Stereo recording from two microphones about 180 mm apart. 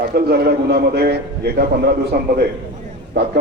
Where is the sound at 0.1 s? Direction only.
60° right (ahead or behind).